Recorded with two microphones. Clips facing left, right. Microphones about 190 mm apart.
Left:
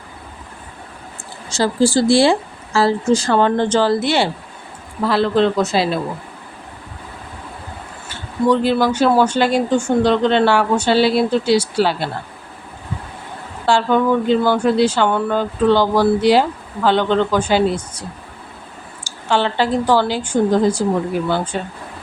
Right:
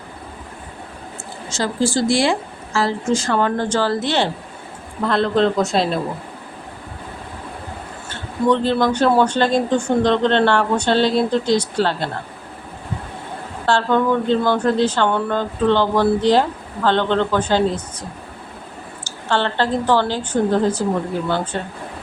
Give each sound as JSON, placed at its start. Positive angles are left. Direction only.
{"t": 1.5, "sound": "a woman's voice", "side_deg": 35}
{"t": 8.1, "sound": "speech", "side_deg": 10}
{"t": 13.7, "sound": "speech", "side_deg": 10}
{"t": 19.0, "sound": "speech", "side_deg": 10}